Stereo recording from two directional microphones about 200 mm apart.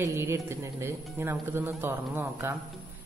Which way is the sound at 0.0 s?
10° right (ahead or behind).